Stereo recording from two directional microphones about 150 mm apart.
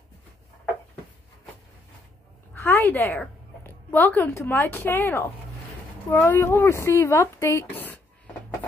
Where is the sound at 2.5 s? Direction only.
15° left (ahead or behind).